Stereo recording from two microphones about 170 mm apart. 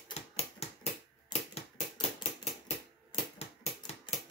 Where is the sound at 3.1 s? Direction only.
40° left (ahead or behind).